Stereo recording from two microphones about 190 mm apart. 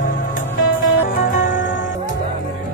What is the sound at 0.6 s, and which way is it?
Music, 90° left.